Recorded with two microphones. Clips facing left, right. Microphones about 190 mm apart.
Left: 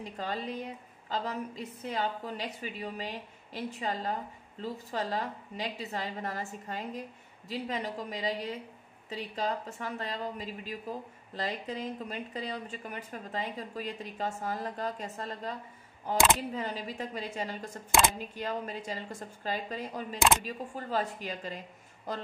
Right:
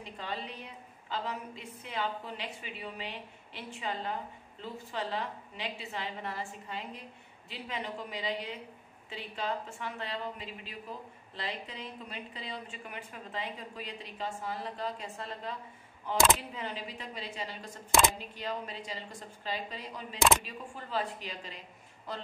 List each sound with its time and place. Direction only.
0.0 s a woman's voice: 45° left (ahead or behind)
16.5 s speech: 40° left (ahead or behind)